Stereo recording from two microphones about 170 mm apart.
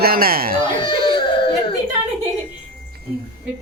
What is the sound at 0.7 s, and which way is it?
Baby cry, 30° left (ahead or behind).